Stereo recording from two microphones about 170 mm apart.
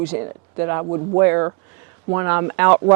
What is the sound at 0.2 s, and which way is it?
Speech, 20° right (ahead or behind).